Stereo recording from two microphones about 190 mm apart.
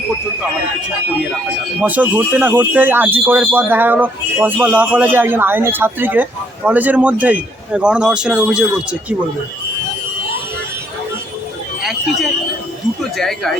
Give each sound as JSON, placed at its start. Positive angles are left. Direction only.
{"t": 1.8, "sound": "speech", "side_deg": -10}
{"t": 11.8, "sound": "a sound", "side_deg": 0}
{"t": 13.0, "sound": "speech", "side_deg": 0}